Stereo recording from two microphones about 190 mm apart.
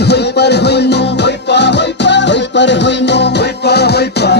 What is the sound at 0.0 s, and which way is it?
Music, 60° left (ahead or behind).